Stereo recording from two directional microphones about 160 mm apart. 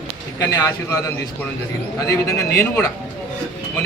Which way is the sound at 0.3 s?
20° left (ahead or behind).